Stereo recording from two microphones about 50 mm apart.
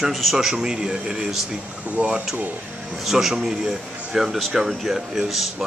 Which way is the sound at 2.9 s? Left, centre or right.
Centre.